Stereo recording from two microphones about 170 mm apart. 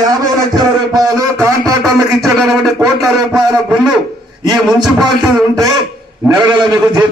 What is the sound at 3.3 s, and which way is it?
Speech, 25° right (ahead or behind).